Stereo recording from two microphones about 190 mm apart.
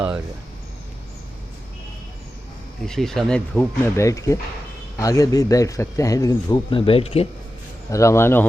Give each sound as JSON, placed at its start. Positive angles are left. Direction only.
{"t": 2.8, "sound": "speech", "side_deg": 0}
{"t": 7.9, "sound": "speech", "side_deg": 15}